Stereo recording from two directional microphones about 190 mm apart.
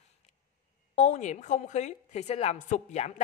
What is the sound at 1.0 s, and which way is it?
A woman's voice, 40° left (ahead or behind).